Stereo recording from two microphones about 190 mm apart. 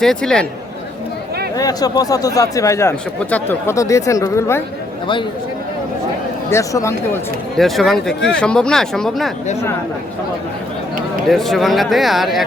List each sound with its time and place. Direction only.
0.0 s speech: 5° left (ahead or behind)
1.5 s speech: 20° left (ahead or behind)
6.5 s speech: 15° left (ahead or behind)
7.5 s speech: centre (ahead or behind)
11.3 s speech: centre (ahead or behind)